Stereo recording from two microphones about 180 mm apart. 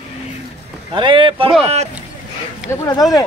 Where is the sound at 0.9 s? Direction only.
30° right (ahead or behind).